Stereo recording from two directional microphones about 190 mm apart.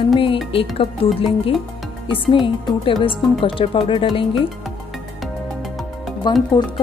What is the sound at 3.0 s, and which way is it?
Speech, 25° left (ahead or behind).